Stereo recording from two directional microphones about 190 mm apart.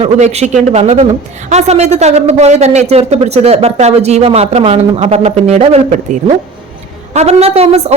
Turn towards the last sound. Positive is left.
turn(degrees=-35)  # may be behind; listen again after turning